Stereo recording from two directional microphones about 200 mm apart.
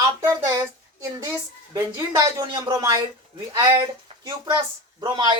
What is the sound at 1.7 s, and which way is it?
Speech, 20° right (ahead or behind).